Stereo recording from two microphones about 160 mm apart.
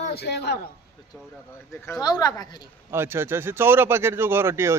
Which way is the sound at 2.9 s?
15° right (ahead or behind).